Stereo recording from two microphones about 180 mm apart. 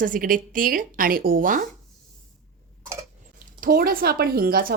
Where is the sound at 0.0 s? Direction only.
50° right (ahead or behind).